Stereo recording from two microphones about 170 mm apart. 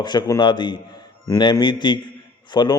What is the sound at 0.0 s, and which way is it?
Speech, 25° left (ahead or behind).